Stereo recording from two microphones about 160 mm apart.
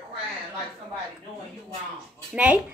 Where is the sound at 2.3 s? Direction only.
10° right (ahead or behind).